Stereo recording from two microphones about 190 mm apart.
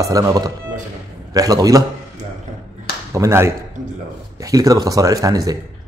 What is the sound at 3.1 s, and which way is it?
Speech, 15° right (ahead or behind).